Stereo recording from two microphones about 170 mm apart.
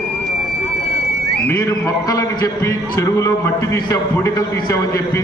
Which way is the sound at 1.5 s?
15° left (ahead or behind).